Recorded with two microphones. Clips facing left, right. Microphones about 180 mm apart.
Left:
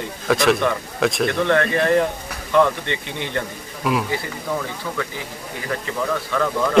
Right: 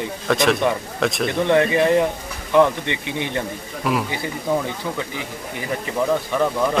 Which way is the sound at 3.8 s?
Centre (ahead or behind).